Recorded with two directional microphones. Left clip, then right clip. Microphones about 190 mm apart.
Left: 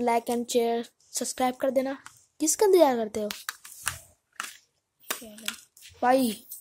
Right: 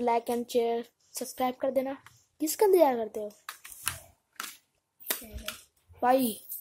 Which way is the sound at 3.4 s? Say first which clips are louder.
Left 6 dB; 55° left (ahead or behind).